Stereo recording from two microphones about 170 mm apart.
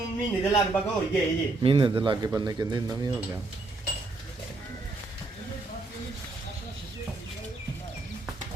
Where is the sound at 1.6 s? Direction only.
30° right (ahead or behind).